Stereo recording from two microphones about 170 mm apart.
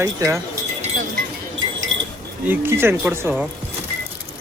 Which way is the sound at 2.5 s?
15° right (ahead or behind).